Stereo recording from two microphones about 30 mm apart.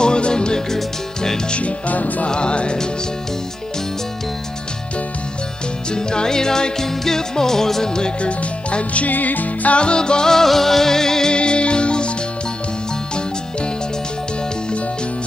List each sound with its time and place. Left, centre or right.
0.0 s music: left
1.9 s music: left
2.2 s music: left
5.9 s music: left
8.2 s speech: left
9.0 s music: left
9.8 s music: left
10.3 s music: centre
11.3 s music: left